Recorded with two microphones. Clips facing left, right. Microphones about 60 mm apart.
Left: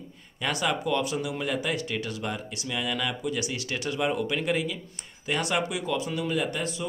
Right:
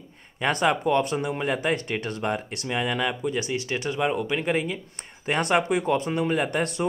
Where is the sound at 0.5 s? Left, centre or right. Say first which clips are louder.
Right 5 dB; right.